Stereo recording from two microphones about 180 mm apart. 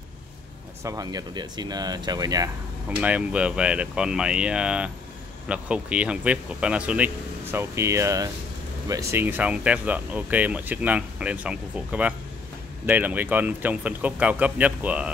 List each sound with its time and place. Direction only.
0.8 s speech: 20° right (ahead or behind)
3.0 s speech: 5° right (ahead or behind)